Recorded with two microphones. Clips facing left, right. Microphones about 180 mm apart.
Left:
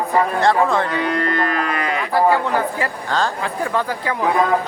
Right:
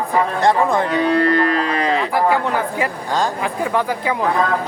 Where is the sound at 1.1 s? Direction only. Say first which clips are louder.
Right 5 dB; 35° right (ahead or behind).